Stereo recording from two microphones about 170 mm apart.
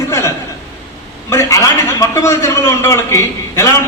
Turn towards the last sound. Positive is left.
turn(degrees=15)  # may be behind; listen again after turning